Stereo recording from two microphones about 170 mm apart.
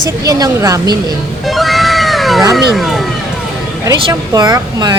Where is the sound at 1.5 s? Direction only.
Centre (ahead or behind).